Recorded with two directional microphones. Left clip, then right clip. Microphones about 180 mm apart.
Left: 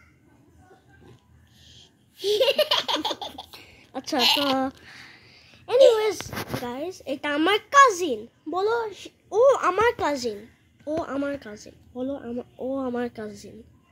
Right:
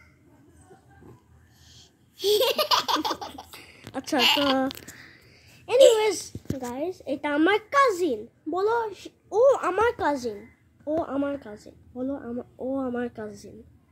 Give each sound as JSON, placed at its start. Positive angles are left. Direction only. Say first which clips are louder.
{"t": 1.6, "sound": "laughter", "louder": "left 2 dB", "side_deg": -45}
{"t": 3.5, "sound": "a sound", "louder": "even", "side_deg": -10}
{"t": 4.2, "sound": "speech", "louder": "even", "side_deg": -30}
{"t": 5.2, "sound": "a sound", "louder": "left 1 dB", "side_deg": 0}
{"t": 5.9, "sound": "speech", "louder": "even", "side_deg": 0}
{"t": 6.6, "sound": "a child's voice", "louder": "right 1 dB", "side_deg": 25}